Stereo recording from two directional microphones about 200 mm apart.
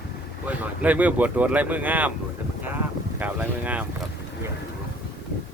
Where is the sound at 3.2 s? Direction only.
10° right (ahead or behind).